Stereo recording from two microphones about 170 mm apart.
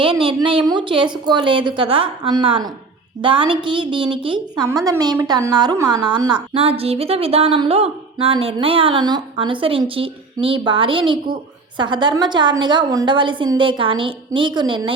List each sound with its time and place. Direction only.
0.0 s a woman's voice: 30° right (ahead or behind)
6.5 s a woman's voice: 35° right (ahead or behind)